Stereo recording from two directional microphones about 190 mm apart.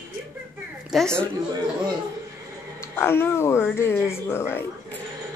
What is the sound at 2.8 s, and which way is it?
Speech, 10° left (ahead or behind).